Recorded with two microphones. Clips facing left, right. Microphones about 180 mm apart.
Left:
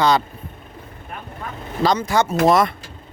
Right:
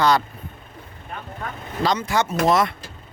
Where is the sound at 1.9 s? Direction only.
35° left (ahead or behind).